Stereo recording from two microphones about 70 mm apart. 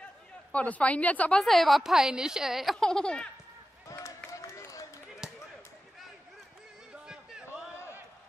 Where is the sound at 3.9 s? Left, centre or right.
Left.